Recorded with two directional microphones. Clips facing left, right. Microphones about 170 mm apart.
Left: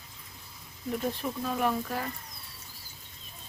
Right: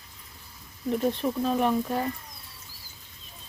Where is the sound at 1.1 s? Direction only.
25° right (ahead or behind).